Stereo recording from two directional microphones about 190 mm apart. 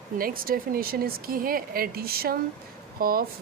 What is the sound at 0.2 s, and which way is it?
Speech, 50° right (ahead or behind).